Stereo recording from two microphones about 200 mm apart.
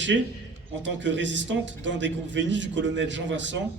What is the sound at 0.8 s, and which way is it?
A man's voice, 65° right (ahead or behind).